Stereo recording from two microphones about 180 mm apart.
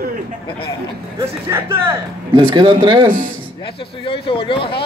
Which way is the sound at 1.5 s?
15° right (ahead or behind).